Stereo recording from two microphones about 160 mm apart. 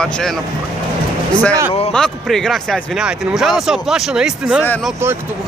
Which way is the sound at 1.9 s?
5° left (ahead or behind).